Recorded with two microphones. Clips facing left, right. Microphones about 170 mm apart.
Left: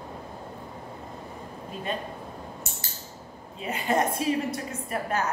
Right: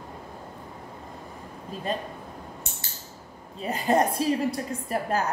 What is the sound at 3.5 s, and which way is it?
A woman's voice, 35° right (ahead or behind).